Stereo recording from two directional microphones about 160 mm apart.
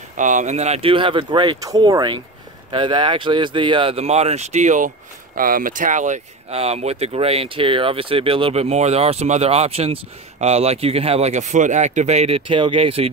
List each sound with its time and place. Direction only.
0.2 s speech: 50° right (ahead or behind)